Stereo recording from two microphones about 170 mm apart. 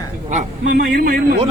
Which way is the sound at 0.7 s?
65° right (ahead or behind).